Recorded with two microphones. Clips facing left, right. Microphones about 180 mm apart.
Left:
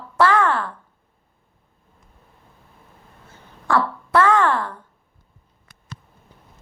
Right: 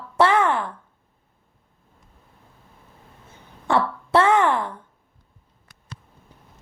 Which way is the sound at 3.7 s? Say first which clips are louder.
Even; 25° right (ahead or behind).